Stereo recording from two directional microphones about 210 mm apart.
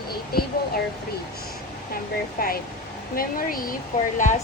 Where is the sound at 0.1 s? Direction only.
45° left (ahead or behind).